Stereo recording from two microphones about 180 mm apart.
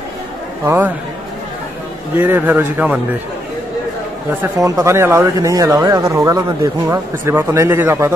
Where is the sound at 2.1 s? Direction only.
10° right (ahead or behind).